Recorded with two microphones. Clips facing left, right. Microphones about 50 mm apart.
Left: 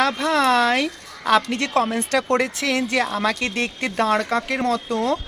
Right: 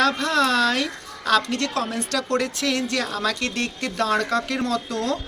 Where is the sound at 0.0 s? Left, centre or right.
Centre.